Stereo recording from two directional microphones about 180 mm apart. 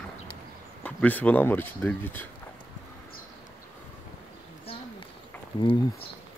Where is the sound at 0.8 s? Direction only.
10° left (ahead or behind).